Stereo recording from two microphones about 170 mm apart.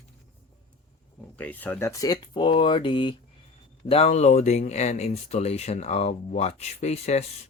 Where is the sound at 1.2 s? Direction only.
10° left (ahead or behind); by 7.2 s 40° left (ahead or behind).